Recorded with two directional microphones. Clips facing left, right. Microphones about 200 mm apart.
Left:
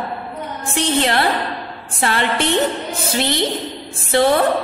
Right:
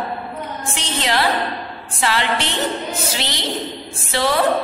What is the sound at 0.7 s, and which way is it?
A woman's voice, 60° left (ahead or behind).